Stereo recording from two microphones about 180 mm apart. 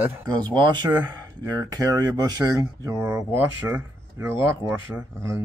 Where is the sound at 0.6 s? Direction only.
25° right (ahead or behind).